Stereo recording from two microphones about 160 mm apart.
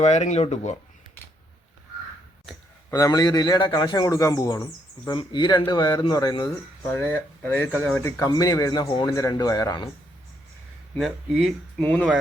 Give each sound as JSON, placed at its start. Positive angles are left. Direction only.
{"t": 0.0, "sound": "speech", "side_deg": 45}
{"t": 2.9, "sound": "a man's voice", "side_deg": 25}
{"t": 6.8, "sound": "a man's voice", "side_deg": 15}
{"t": 10.9, "sound": "speech", "side_deg": 0}